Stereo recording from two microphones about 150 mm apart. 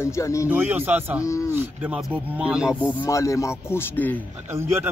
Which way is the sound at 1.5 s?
10° right (ahead or behind).